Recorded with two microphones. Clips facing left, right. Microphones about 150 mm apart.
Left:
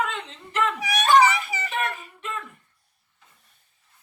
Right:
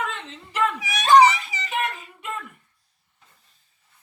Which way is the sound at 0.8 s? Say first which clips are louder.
Right 3 dB; 55° left (ahead or behind).